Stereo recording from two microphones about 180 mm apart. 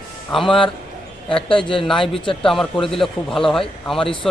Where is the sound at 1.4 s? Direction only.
30° left (ahead or behind).